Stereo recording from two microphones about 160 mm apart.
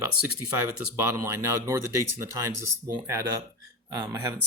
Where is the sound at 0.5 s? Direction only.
15° right (ahead or behind).